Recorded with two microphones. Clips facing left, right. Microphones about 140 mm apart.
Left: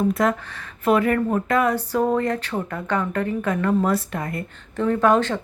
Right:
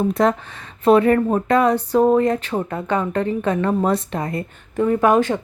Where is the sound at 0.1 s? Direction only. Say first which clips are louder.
Right 3 dB; 25° right (ahead or behind).